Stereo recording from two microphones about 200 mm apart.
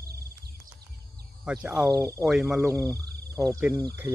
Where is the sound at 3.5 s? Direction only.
15° right (ahead or behind).